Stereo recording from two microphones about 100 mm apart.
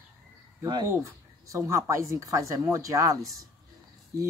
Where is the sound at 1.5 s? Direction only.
30° right (ahead or behind).